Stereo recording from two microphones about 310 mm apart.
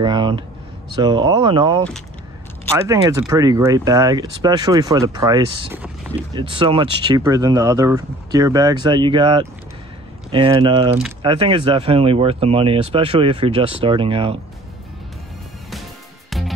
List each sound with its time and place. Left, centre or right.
0.0 s speech: centre
2.9 s speech: centre
16.3 s music: centre